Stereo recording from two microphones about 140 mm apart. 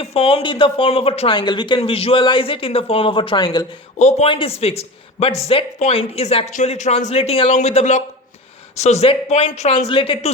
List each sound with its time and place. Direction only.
0.0 s speech: 40° left (ahead or behind)
1.4 s speech: 35° left (ahead or behind)
3.9 s a man's voice: 55° left (ahead or behind)
4.3 s speech: 40° left (ahead or behind)